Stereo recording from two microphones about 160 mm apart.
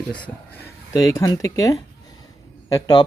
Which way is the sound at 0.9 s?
20° left (ahead or behind).